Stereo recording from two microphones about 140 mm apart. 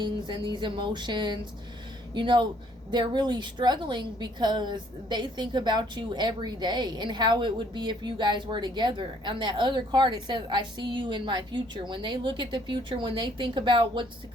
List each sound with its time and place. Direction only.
0.0 s a woman's voice: 35° right (ahead or behind)